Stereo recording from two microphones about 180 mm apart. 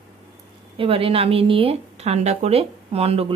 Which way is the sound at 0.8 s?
30° right (ahead or behind).